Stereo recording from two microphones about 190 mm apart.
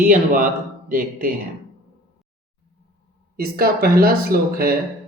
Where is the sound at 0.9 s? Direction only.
45° right (ahead or behind).